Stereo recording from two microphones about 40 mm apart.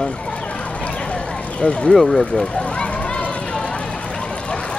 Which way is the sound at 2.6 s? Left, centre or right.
Left.